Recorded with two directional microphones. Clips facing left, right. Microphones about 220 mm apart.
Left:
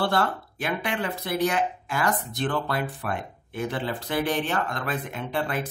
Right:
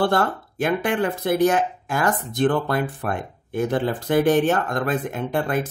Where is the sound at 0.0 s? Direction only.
50° right (ahead or behind).